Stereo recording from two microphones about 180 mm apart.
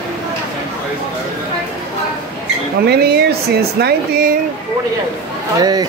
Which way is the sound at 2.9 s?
60° right (ahead or behind).